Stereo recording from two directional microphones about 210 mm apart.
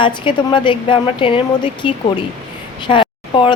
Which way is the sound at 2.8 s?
25° left (ahead or behind).